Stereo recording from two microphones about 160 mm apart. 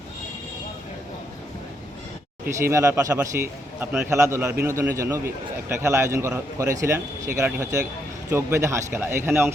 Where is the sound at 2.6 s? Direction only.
20° right (ahead or behind).